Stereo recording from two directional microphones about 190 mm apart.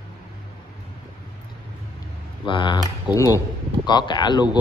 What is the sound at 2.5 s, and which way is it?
A man's voice, 25° left (ahead or behind).